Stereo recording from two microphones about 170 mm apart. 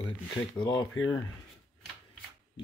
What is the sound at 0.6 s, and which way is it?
Speech, 25° left (ahead or behind).